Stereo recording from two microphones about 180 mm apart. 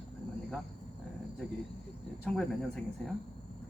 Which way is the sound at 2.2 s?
5° left (ahead or behind).